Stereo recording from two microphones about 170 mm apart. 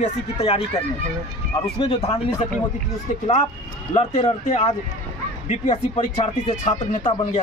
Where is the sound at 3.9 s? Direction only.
35° left (ahead or behind).